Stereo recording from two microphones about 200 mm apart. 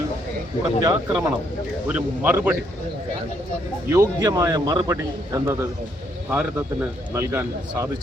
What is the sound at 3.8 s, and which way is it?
Speech, 15° right (ahead or behind).